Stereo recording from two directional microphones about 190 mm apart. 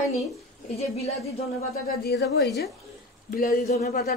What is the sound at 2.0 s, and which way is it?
Speech, 55° left (ahead or behind).